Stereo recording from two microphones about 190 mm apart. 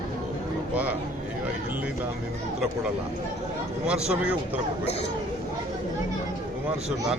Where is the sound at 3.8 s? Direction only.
5° right (ahead or behind).